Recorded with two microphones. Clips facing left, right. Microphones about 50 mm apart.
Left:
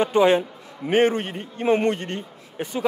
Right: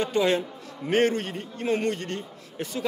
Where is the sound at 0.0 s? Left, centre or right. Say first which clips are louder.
Left 6 dB; left.